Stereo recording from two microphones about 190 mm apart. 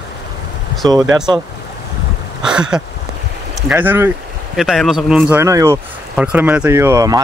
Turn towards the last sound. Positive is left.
turn(degrees=-15)  # may be behind; listen again after turning